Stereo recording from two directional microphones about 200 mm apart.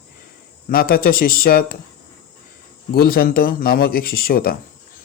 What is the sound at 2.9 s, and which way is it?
Speech, 50° left (ahead or behind).